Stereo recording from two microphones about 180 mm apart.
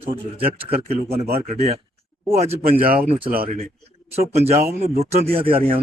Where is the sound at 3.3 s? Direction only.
55° right (ahead or behind).